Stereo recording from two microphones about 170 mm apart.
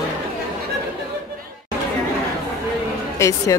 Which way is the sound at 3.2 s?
15° left (ahead or behind).